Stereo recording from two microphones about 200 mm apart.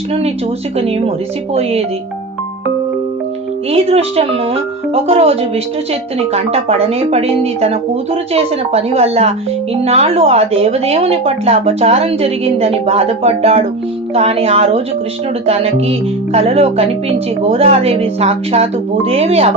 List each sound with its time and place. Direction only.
0.8 s speech: 30° right (ahead or behind)
3.7 s speech: 30° right (ahead or behind)